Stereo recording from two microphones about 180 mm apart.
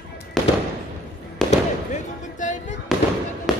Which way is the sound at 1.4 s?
Centre (ahead or behind).